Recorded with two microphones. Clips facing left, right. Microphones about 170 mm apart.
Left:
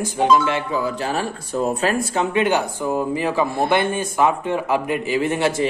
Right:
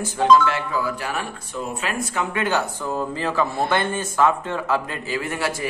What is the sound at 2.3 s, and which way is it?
Speech, 15° left (ahead or behind).